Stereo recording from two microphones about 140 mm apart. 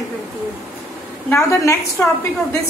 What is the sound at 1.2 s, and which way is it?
Speech, 20° left (ahead or behind).